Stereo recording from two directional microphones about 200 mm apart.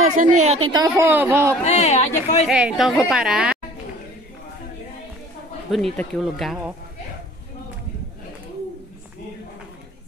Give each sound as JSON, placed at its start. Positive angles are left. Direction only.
{"t": 0.0, "sound": "a woman's voice", "side_deg": -40}
{"t": 1.6, "sound": "speech", "side_deg": 35}
{"t": 2.4, "sound": "a woman's voice", "side_deg": -5}
{"t": 5.7, "sound": "a woman's voice", "side_deg": 0}